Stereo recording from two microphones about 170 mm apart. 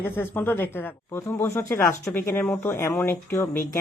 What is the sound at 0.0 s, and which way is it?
Speech, 10° left (ahead or behind).